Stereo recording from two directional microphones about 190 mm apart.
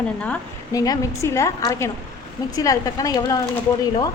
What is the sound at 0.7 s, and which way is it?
A woman's voice, 20° left (ahead or behind).